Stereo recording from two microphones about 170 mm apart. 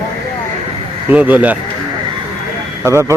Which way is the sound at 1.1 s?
10° right (ahead or behind).